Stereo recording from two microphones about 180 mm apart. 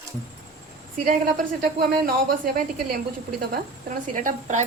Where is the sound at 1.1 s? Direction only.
50° right (ahead or behind).